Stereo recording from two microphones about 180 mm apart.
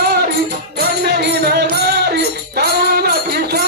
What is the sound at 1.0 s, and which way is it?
Music, 65° right (ahead or behind).